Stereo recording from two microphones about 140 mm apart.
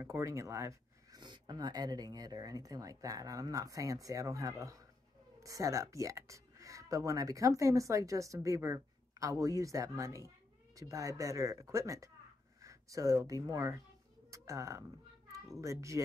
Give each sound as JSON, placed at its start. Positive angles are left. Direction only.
{"t": 0.0, "sound": "speech", "side_deg": -20}